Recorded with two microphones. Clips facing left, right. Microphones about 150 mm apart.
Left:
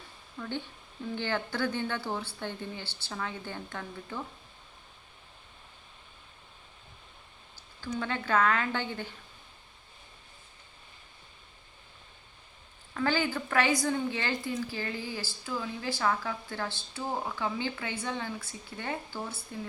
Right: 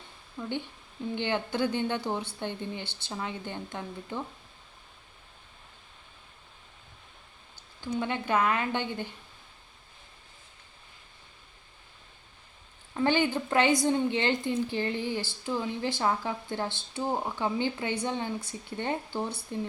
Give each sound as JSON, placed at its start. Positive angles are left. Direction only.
{"t": 0.3, "sound": "a woman's voice", "side_deg": -15}
{"t": 7.8, "sound": "a woman's voice", "side_deg": -15}
{"t": 12.9, "sound": "a woman's voice", "side_deg": -20}